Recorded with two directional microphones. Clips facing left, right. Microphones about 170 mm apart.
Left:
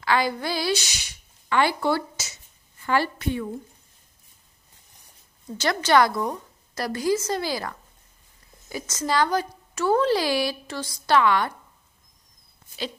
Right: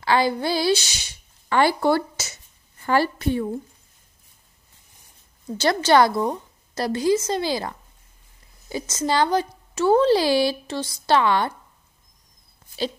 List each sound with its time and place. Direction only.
0.0 s a woman's voice: 30° right (ahead or behind); by 2.3 s 50° right (ahead or behind)
2.8 s a woman's voice: 35° right (ahead or behind)
5.6 s a child's voice: 30° right (ahead or behind)